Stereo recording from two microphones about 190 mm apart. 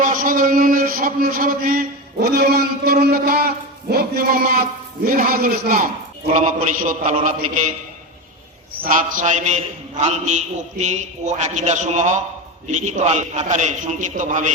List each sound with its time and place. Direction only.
0.0 s a man's voice: 45° right (ahead or behind)
8.7 s a man's voice: 50° right (ahead or behind)